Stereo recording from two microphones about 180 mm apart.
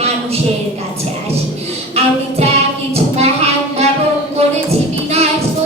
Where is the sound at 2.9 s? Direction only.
35° right (ahead or behind).